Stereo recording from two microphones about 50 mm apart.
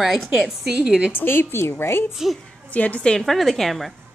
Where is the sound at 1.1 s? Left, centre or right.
Left.